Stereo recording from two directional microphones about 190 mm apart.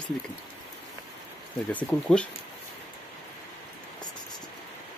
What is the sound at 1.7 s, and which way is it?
Speech, 10° left (ahead or behind).